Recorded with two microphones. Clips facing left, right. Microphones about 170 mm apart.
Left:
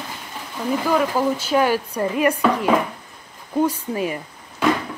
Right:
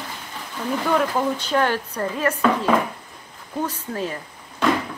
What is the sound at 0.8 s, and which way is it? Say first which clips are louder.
Speech: left 1 dB; 5° left (ahead or behind).